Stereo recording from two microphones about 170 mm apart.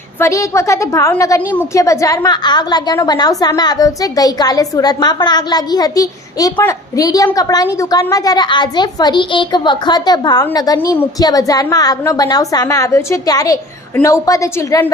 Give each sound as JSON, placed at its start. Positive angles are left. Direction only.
{"t": 0.2, "sound": "a woman's voice", "side_deg": 15}